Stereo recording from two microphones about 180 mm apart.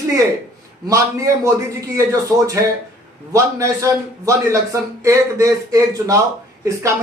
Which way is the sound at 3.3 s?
15° right (ahead or behind).